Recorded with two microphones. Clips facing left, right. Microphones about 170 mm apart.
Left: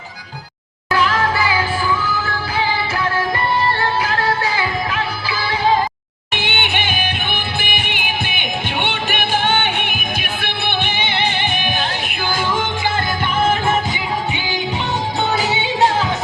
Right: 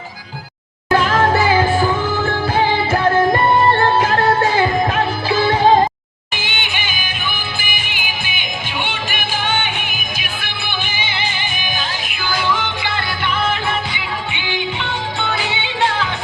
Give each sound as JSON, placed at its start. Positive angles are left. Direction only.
{"t": 0.9, "sound": "music", "side_deg": -45}
{"t": 6.3, "sound": "music", "side_deg": 60}